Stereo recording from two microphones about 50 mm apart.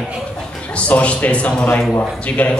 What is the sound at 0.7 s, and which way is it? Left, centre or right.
A man's voice, left.